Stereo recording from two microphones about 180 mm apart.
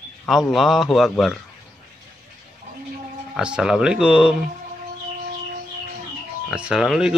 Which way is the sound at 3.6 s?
5° right (ahead or behind).